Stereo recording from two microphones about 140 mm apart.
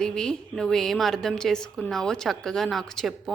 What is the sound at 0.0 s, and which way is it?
A woman's voice, 5° left (ahead or behind).